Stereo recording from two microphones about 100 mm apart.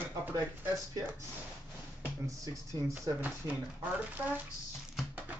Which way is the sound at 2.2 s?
35° right (ahead or behind).